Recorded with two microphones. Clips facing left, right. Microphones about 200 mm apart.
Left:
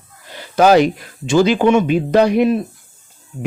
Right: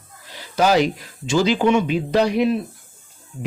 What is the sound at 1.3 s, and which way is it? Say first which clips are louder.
Speech: left 4 dB; 55° left (ahead or behind).